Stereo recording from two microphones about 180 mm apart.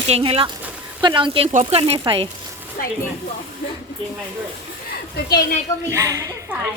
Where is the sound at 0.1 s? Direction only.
30° right (ahead or behind).